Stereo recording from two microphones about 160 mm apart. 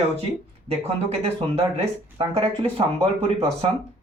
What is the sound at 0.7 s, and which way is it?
Speech, 40° right (ahead or behind).